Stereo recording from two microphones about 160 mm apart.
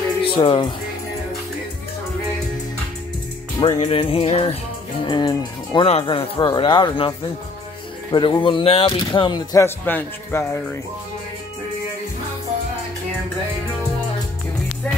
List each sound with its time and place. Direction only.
0.2 s speech: 35° left (ahead or behind)
3.6 s speech: 35° left (ahead or behind)
9.8 s a man's voice: 10° left (ahead or behind)